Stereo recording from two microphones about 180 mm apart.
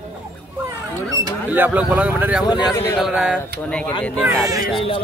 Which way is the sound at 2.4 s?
20° left (ahead or behind).